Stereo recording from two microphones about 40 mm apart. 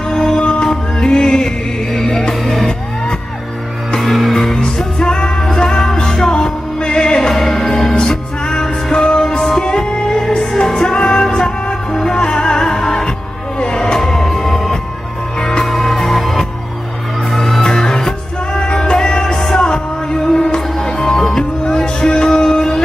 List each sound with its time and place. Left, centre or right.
0.3 s music: left
4.0 s music: centre
4.6 s music: left
13.9 s music: centre
17.6 s music: centre
19.7 s music: left